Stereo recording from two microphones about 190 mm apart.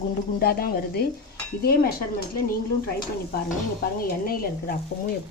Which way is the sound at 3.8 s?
50° left (ahead or behind).